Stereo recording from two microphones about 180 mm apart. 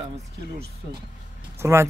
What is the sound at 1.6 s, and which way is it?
Speech, 15° right (ahead or behind).